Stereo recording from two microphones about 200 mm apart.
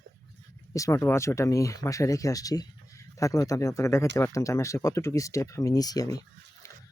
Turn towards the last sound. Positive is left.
turn(degrees=20)  # may be behind; listen again after turning